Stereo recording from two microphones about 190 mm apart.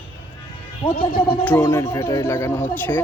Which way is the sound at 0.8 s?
25° left (ahead or behind).